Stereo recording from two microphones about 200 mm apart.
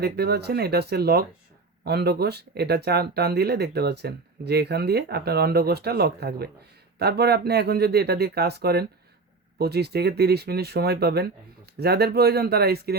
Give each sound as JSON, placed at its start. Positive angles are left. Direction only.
{"t": 0.0, "sound": "speech", "side_deg": -55}